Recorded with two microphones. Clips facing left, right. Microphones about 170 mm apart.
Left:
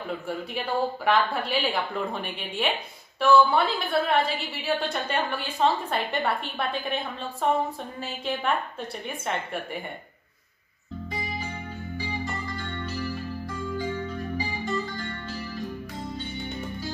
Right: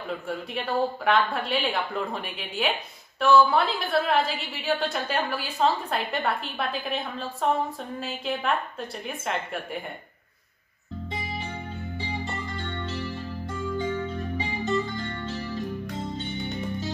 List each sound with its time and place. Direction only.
0.1 s a woman's voice: centre (ahead or behind)
8.0 s a woman's voice: centre (ahead or behind)
12.8 s music: 25° right (ahead or behind)